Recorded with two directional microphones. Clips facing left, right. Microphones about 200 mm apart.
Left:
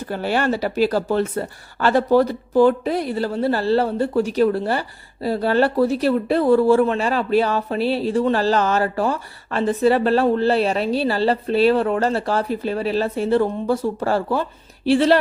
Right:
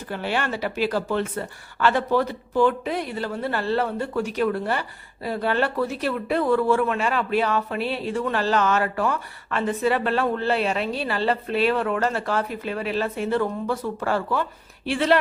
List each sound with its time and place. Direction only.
0.1 s speech: 40° left (ahead or behind)